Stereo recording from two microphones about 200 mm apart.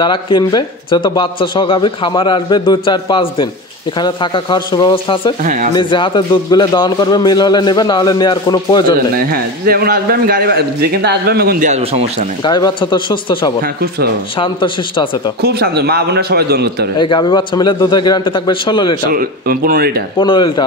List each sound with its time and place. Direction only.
0.0 s a man's voice: 25° left (ahead or behind)
5.4 s speech: 40° right (ahead or behind)
5.8 s a man's voice: 25° left (ahead or behind)
9.1 s speech: 45° right (ahead or behind)
11.7 s speech: 30° right (ahead or behind)
12.4 s a man's voice: 20° left (ahead or behind)
13.6 s speech: 50° right (ahead or behind)
14.4 s a man's voice: 25° left (ahead or behind)
15.4 s speech: 50° right (ahead or behind)
17.0 s a man's voice: 25° left (ahead or behind)
19.1 s speech: 45° right (ahead or behind)
20.2 s a man's voice: 25° left (ahead or behind)